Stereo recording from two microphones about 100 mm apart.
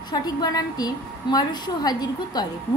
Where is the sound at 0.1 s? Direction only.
40° left (ahead or behind).